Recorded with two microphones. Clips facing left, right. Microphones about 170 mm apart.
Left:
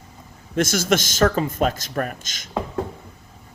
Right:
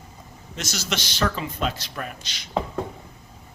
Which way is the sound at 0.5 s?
50° left (ahead or behind).